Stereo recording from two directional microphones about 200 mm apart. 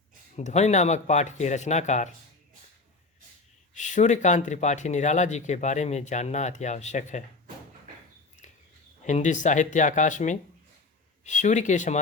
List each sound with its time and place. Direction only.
0.3 s speech: 35° left (ahead or behind)
3.8 s speech: 35° left (ahead or behind)
9.0 s speech: 35° left (ahead or behind)